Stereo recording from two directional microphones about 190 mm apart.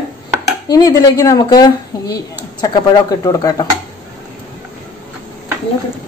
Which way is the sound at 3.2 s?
20° left (ahead or behind).